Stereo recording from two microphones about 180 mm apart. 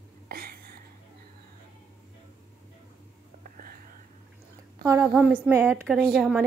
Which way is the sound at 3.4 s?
50° right (ahead or behind).